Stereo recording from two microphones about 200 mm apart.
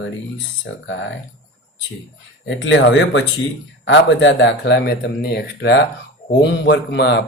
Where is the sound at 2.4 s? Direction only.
65° left (ahead or behind).